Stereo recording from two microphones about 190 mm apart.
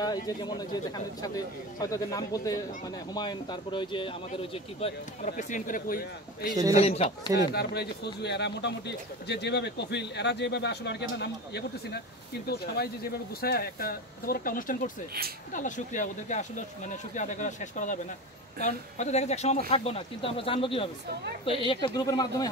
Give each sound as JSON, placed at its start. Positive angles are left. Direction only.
{"t": 0.0, "sound": "a man's voice", "side_deg": 20}
{"t": 5.3, "sound": "speech", "side_deg": 45}
{"t": 6.7, "sound": "speech", "side_deg": 30}
{"t": 7.3, "sound": "a man's voice", "side_deg": 60}